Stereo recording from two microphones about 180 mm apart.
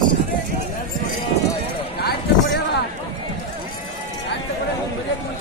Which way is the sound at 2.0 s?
60° left (ahead or behind).